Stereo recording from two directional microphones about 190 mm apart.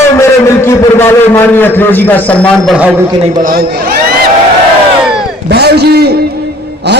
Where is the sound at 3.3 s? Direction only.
45° right (ahead or behind).